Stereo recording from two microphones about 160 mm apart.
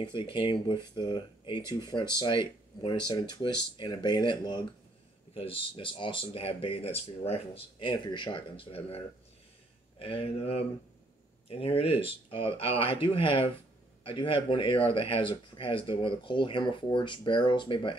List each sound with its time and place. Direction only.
0.0 s speech: 30° left (ahead or behind)